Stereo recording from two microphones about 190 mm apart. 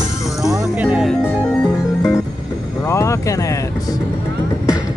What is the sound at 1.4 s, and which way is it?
Music, 10° left (ahead or behind).